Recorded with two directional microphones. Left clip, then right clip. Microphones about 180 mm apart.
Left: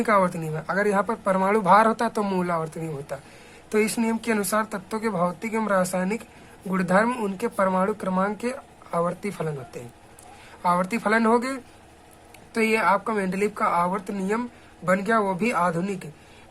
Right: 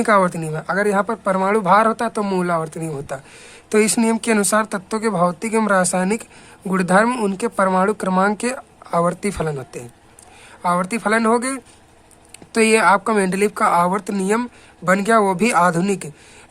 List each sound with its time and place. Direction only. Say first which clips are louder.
0.0 s a woman's voice: right 5 dB; 25° right (ahead or behind)
10.6 s a woman's voice: right 3 dB; 20° right (ahead or behind); by 16.0 s 40° right (ahead or behind)